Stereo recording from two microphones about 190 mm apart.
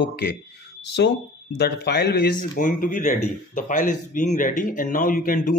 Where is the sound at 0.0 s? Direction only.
60° left (ahead or behind).